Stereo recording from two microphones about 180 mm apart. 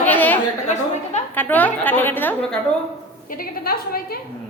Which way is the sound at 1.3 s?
10° left (ahead or behind).